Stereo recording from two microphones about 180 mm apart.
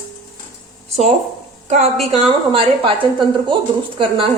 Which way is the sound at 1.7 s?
35° right (ahead or behind).